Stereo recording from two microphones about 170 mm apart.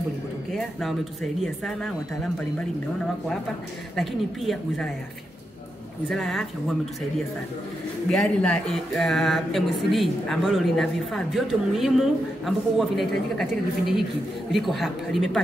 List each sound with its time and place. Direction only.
0.5 s speech: centre (ahead or behind)
3.9 s speech: centre (ahead or behind)
6.0 s speech: centre (ahead or behind)
8.1 s speech: 5° left (ahead or behind)